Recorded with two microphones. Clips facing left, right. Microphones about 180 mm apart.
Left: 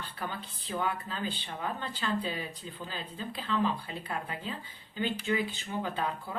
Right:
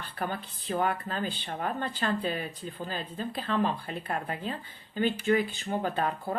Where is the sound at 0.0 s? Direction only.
50° right (ahead or behind).